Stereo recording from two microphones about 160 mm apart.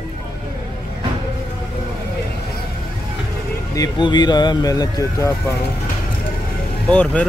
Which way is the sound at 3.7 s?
25° left (ahead or behind).